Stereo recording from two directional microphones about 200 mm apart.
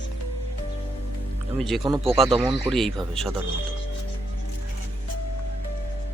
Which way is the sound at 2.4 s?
25° right (ahead or behind).